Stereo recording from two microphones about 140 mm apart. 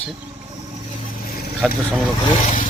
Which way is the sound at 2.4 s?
65° left (ahead or behind).